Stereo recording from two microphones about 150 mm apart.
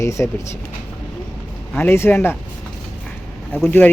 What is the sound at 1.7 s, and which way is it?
Speech, 15° left (ahead or behind).